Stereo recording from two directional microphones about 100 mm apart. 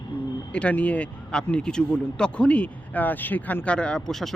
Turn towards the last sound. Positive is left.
turn(degrees=5)  # may be behind; listen again after turning